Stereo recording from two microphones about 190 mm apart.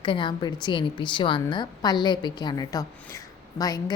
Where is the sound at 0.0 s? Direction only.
25° left (ahead or behind).